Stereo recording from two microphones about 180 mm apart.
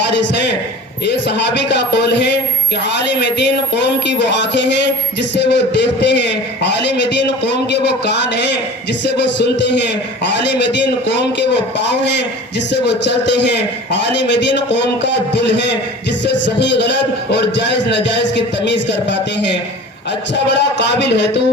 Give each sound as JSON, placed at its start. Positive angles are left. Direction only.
{"t": 0.1, "sound": "a man's voice", "side_deg": 75}
{"t": 20.3, "sound": "a man's voice", "side_deg": 75}